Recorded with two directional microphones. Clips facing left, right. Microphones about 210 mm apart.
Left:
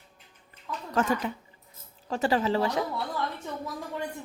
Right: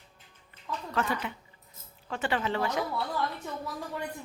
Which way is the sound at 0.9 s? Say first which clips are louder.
Left 5 dB; 45° left (ahead or behind).